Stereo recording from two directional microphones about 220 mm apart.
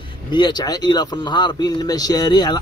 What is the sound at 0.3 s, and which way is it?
A man's voice, 20° left (ahead or behind).